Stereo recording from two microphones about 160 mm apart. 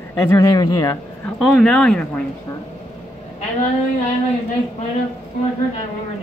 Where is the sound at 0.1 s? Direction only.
15° left (ahead or behind).